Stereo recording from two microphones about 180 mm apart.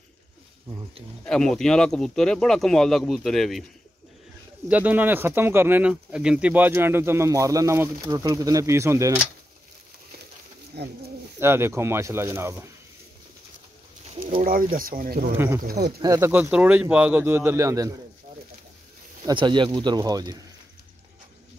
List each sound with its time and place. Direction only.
1.2 s speech: 5° left (ahead or behind)
4.6 s speech: 10° right (ahead or behind)
10.8 s speech: 65° right (ahead or behind)
11.3 s speech: 15° right (ahead or behind)
14.4 s speech: 50° right (ahead or behind)
15.3 s speech: 10° right (ahead or behind)
15.6 s speech: 60° right (ahead or behind)
16.0 s speech: 15° right (ahead or behind)
19.2 s speech: 25° right (ahead or behind)